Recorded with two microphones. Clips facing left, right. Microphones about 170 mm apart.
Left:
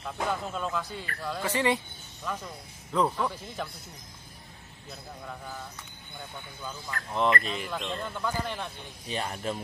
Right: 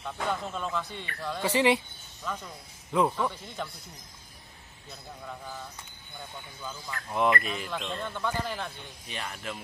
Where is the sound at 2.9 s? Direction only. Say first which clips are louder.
Right 1 dB; 5° right (ahead or behind).